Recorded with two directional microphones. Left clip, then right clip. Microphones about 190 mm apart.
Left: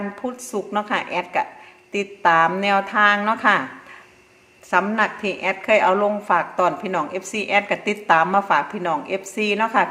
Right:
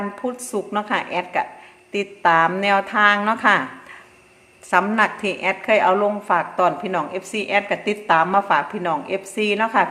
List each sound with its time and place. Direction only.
0.2 s a woman's voice: centre (ahead or behind)
4.7 s a woman's voice: 5° right (ahead or behind)